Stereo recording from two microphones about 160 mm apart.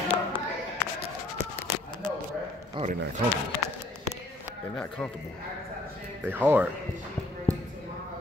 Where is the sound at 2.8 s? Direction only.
30° right (ahead or behind).